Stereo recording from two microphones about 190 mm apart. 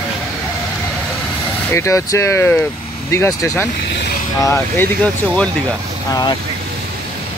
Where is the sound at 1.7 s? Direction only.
15° left (ahead or behind).